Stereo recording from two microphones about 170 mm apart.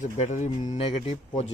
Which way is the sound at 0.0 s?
45° left (ahead or behind).